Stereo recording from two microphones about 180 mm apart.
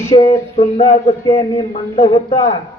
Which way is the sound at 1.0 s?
25° left (ahead or behind).